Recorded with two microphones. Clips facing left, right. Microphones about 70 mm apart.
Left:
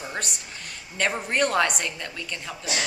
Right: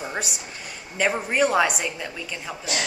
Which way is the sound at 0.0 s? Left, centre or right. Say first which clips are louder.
Right 3 dB; centre.